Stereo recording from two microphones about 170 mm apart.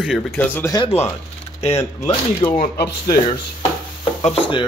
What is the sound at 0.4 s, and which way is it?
Speech, 10° left (ahead or behind).